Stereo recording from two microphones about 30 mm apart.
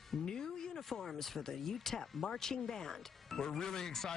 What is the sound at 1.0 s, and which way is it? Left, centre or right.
Speech, centre.